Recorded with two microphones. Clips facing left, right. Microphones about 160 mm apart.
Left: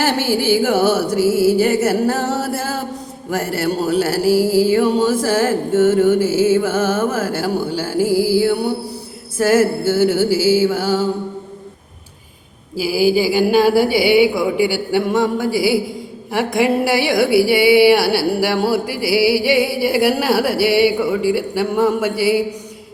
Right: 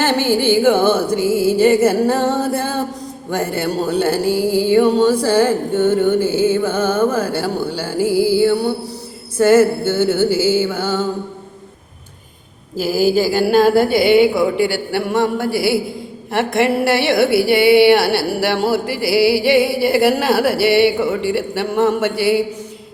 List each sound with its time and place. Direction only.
0.0 s mantra: 10° left (ahead or behind)
8.4 s a woman's voice: 10° left (ahead or behind)
9.8 s a woman's voice: 10° left (ahead or behind)
10.2 s music: 90° left
10.6 s a woman's voice: 5° left (ahead or behind)
12.7 s a woman's voice: 10° left (ahead or behind)